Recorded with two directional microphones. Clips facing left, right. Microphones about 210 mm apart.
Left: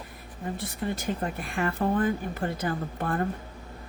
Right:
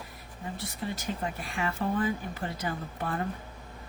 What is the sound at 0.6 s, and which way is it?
Speech, 55° left (ahead or behind).